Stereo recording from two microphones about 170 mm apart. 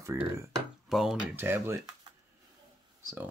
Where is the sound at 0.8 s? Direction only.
Centre (ahead or behind).